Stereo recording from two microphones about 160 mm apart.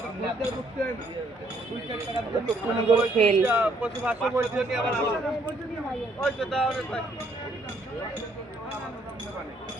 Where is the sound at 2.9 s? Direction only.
35° right (ahead or behind).